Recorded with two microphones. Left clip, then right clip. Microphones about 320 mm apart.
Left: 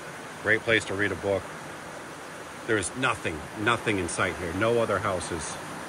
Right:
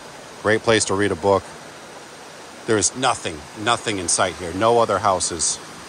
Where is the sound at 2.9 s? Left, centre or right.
Centre.